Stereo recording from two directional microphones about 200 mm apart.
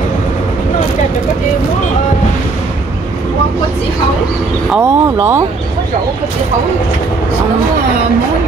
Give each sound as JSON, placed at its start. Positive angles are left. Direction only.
{"t": 4.6, "sound": "speech", "side_deg": -10}